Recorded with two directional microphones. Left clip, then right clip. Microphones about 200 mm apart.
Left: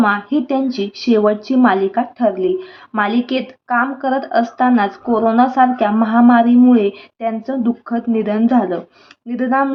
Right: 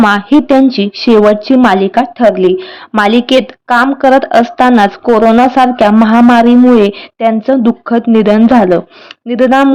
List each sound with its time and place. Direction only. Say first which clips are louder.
0.0 s a woman's voice: right 8 dB; 40° right (ahead or behind)